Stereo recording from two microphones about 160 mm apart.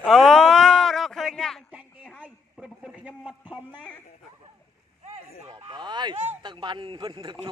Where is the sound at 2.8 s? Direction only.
5° right (ahead or behind).